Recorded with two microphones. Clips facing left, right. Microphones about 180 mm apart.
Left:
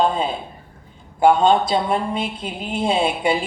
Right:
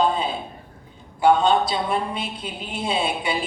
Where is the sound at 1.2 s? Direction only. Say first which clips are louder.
Left 3 dB; 50° left (ahead or behind).